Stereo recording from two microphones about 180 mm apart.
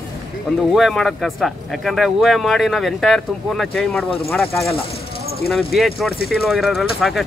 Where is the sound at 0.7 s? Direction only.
Centre (ahead or behind).